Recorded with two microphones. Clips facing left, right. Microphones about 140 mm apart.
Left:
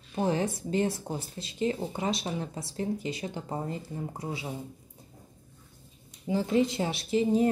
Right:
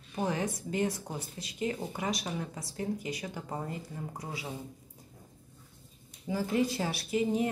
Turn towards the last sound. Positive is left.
turn(degrees=30)  # may be behind; listen again after turning